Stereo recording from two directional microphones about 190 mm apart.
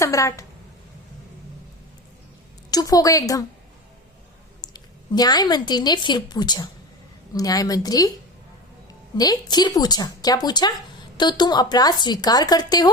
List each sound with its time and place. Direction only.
0.0 s a woman's voice: 15° left (ahead or behind)
2.6 s speech: 20° left (ahead or behind)
4.6 s a woman's voice: 20° left (ahead or behind)
9.1 s speech: 20° left (ahead or behind)